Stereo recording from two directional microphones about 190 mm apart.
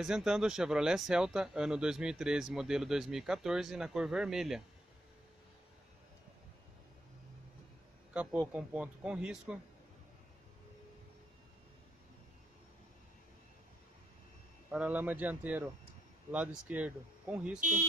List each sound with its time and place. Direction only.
0.0 s speech: 5° right (ahead or behind)
8.1 s a man's voice: 5° right (ahead or behind)
14.7 s a man's voice: 5° right (ahead or behind)
17.6 s speech: 45° right (ahead or behind)